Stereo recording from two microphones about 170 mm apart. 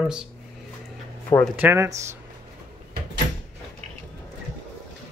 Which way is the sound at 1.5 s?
10° right (ahead or behind).